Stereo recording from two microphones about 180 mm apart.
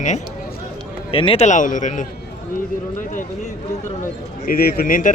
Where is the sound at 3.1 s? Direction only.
45° left (ahead or behind).